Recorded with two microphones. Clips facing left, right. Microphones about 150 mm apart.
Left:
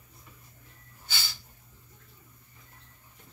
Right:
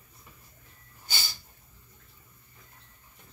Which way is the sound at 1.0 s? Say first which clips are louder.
Right 1 dB; 45° right (ahead or behind).